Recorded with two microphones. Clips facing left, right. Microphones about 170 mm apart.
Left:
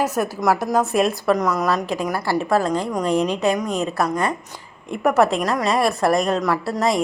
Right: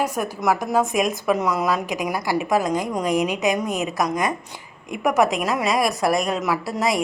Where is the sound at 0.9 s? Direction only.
15° right (ahead or behind).